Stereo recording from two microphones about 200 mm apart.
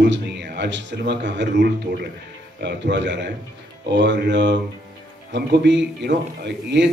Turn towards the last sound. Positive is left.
turn(degrees=-60)  # may be behind; listen again after turning